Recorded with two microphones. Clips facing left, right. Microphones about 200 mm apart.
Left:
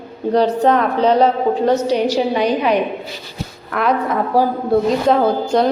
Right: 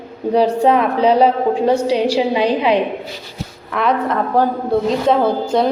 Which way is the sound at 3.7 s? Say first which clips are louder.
Even; centre (ahead or behind).